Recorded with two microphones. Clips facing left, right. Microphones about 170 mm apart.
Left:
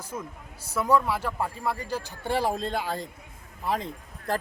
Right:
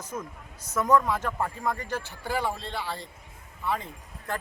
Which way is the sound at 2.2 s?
30° left (ahead or behind).